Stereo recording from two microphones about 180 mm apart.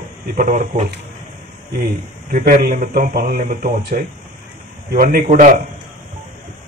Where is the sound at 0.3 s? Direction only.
45° right (ahead or behind).